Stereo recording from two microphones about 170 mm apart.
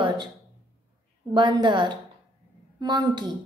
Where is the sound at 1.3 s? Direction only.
30° right (ahead or behind).